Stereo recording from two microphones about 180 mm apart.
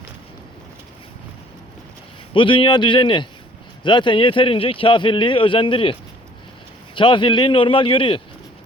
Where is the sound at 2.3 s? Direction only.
30° left (ahead or behind).